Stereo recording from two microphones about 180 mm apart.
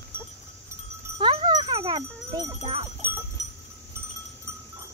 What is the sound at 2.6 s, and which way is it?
Speech, 35° right (ahead or behind).